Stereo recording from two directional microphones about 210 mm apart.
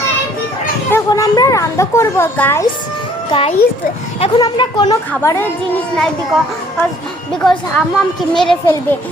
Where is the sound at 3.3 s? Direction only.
30° left (ahead or behind); by 5.8 s 10° left (ahead or behind).